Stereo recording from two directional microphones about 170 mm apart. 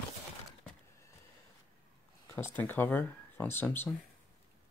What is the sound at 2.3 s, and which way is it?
Speech, 10° left (ahead or behind).